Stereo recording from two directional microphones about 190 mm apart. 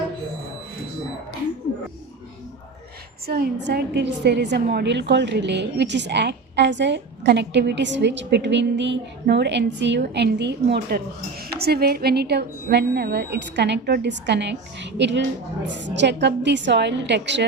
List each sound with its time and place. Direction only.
3.2 s a woman's voice: 55° right (ahead or behind)